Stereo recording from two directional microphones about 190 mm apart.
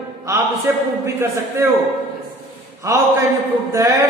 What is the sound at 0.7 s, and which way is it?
Speech, 15° right (ahead or behind).